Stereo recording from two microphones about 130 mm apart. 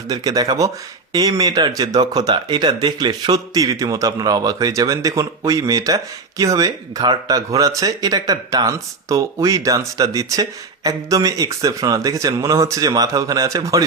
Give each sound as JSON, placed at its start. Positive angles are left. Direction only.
{"t": 0.1, "sound": "speech", "side_deg": -30}